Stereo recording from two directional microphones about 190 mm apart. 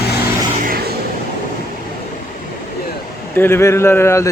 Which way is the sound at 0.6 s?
55° right (ahead or behind).